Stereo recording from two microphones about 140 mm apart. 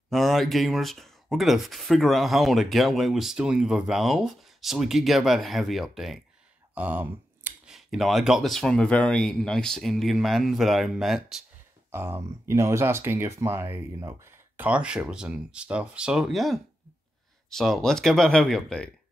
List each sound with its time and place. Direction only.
0.1 s speech: centre (ahead or behind)
6.7 s a sound: 10° right (ahead or behind)
7.7 s speech: centre (ahead or behind)
11.9 s speech: 15° right (ahead or behind); by 18.9 s 5° left (ahead or behind)